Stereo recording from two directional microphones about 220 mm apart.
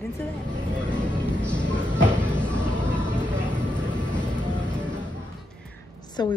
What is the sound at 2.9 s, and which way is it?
Vehicle, 5° left (ahead or behind).